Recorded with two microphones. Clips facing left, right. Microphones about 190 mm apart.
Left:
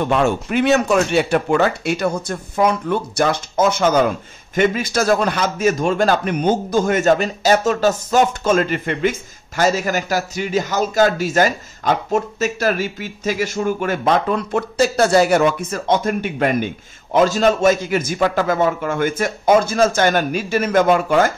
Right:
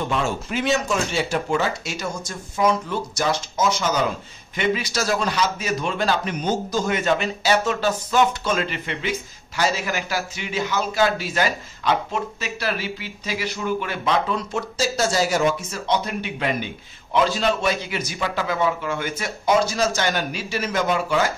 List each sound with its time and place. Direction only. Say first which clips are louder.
0.0 s a man's voice: left 7 dB; 65° left (ahead or behind)